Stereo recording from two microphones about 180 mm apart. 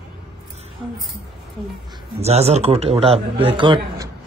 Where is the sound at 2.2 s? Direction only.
35° right (ahead or behind).